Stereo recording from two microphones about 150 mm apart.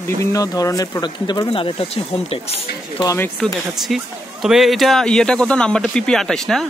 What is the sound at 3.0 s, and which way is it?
Speech, 20° left (ahead or behind).